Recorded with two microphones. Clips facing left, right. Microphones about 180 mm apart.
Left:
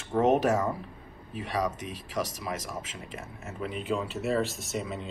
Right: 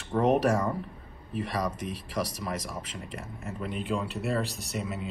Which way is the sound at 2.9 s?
5° left (ahead or behind).